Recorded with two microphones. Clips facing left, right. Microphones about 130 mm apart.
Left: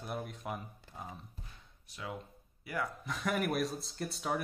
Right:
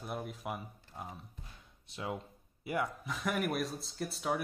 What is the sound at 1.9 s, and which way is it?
A man's voice, 25° right (ahead or behind).